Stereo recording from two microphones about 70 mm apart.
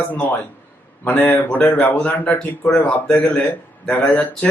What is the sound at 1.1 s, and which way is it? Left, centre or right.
Speech, left.